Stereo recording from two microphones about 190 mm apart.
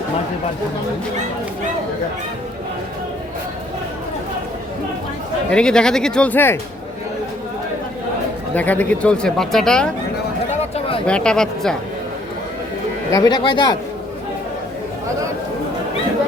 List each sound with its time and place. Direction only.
5.5 s speech: 5° left (ahead or behind)
8.5 s speech: 10° left (ahead or behind)
10.5 s a sound: 30° left (ahead or behind)
11.0 s speech: 5° left (ahead or behind)
13.1 s speech: 20° left (ahead or behind)